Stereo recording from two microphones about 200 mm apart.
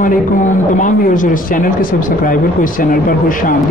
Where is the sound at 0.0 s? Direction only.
40° left (ahead or behind).